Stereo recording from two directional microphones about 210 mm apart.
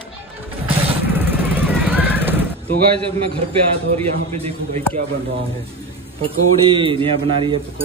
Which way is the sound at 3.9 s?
30° right (ahead or behind).